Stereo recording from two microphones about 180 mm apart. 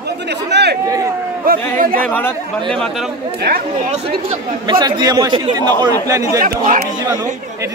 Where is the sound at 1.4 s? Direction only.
55° right (ahead or behind).